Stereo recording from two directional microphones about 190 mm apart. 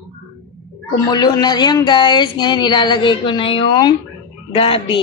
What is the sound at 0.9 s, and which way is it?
Speech, 20° left (ahead or behind).